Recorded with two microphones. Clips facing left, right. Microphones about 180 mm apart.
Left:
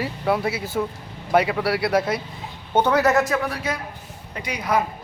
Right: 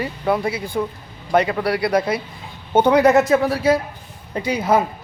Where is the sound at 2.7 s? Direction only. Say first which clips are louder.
Right 5 dB; 15° right (ahead or behind).